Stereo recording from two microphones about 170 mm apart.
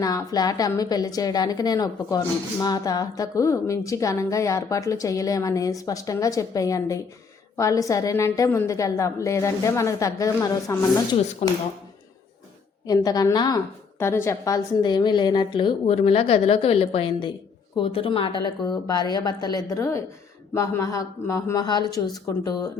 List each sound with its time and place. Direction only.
0.0 s a woman's voice: 20° left (ahead or behind)
11.4 s speech: 40° left (ahead or behind)
12.8 s a woman's voice: 20° left (ahead or behind)